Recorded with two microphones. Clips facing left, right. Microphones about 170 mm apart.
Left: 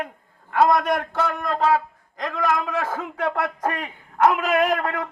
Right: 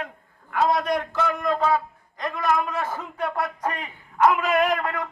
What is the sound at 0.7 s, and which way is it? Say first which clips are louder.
A man's voice: left 2 dB; 60° left (ahead or behind).